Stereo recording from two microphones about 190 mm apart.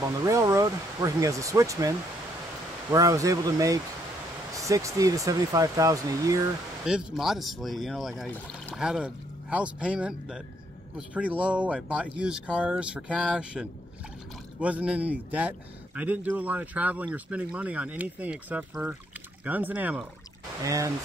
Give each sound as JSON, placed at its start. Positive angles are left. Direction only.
{"t": 0.0, "sound": "speech", "side_deg": -20}
{"t": 6.9, "sound": "speech", "side_deg": -5}
{"t": 8.3, "sound": "speech", "side_deg": 10}
{"t": 8.7, "sound": "speech", "side_deg": -5}